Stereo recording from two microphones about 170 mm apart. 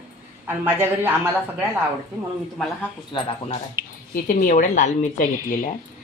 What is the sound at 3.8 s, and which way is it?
Speech, 15° right (ahead or behind).